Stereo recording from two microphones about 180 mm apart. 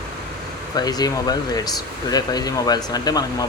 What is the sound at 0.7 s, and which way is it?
Speech, 20° left (ahead or behind).